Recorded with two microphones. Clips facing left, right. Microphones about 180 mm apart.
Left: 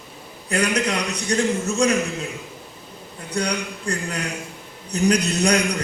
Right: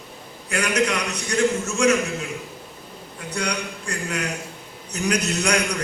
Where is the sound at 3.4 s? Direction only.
35° left (ahead or behind).